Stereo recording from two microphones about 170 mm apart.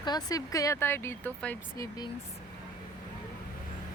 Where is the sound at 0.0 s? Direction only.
25° left (ahead or behind).